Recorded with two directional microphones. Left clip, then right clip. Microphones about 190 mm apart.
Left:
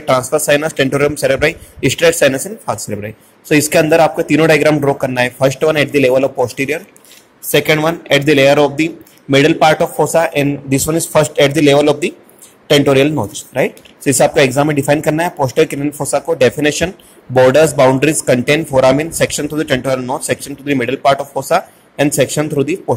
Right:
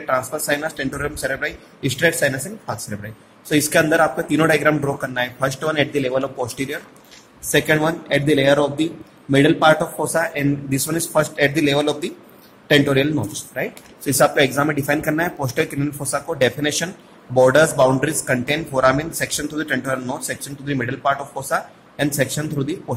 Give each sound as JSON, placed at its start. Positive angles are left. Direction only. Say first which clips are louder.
{"t": 0.0, "sound": "speech", "louder": "left 8 dB", "side_deg": 30}